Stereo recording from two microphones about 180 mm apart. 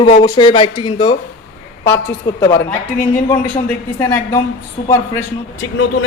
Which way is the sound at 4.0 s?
15° left (ahead or behind).